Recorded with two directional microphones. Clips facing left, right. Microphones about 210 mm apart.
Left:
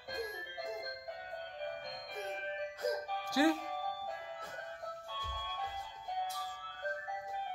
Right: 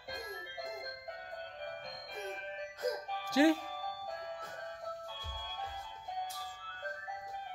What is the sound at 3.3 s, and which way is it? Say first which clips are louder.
Speech: right 3 dB; 25° right (ahead or behind).